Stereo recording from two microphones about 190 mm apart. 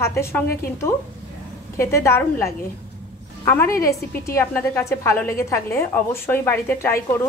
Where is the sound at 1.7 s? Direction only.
15° left (ahead or behind).